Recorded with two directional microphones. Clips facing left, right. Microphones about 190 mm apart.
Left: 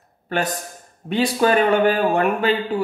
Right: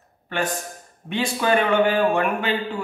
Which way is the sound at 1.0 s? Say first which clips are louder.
Left 4 dB; 35° left (ahead or behind).